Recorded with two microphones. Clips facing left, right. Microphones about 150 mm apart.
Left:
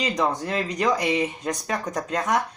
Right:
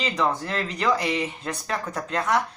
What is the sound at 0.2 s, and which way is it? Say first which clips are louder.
Speech: right 1 dB; 15° left (ahead or behind).